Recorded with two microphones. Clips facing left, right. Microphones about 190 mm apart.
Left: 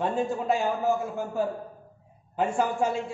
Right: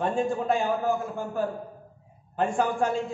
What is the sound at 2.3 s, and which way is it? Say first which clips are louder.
Speech: even; 5° left (ahead or behind).